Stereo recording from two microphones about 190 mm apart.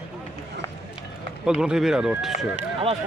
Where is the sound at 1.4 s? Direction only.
5° right (ahead or behind).